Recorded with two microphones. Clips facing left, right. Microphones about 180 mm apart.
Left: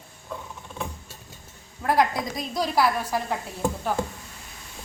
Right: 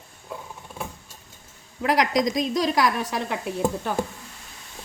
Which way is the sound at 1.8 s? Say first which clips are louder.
Right 2 dB; 90° right.